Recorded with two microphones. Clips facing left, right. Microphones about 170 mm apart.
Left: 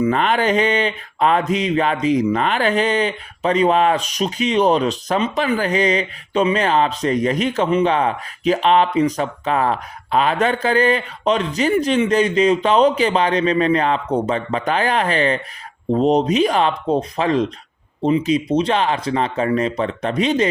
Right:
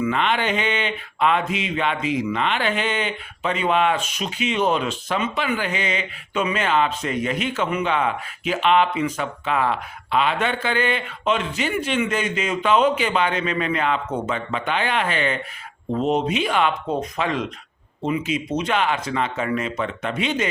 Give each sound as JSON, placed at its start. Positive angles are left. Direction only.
{"t": 0.0, "sound": "speech", "side_deg": 40}